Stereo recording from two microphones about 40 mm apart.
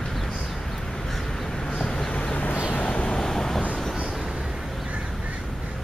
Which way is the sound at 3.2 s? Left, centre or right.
Centre.